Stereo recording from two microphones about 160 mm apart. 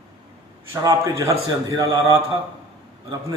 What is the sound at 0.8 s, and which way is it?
Speech, 20° right (ahead or behind).